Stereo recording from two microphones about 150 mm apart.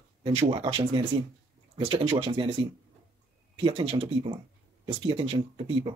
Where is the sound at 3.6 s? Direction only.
35° right (ahead or behind).